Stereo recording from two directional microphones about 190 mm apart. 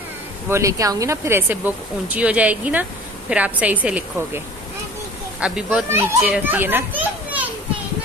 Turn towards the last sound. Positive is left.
turn(degrees=-10)  # may be behind; listen again after turning